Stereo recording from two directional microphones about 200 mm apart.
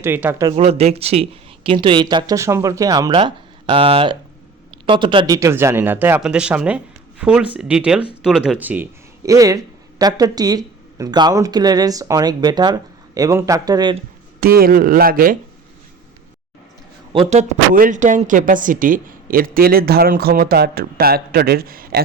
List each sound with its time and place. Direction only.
0.0 s speech: 10° right (ahead or behind)
0.5 s speech: 30° right (ahead or behind)
14.4 s a woman's voice: 50° right (ahead or behind)
17.1 s a woman's voice: 30° right (ahead or behind); by 22.0 s 45° right (ahead or behind)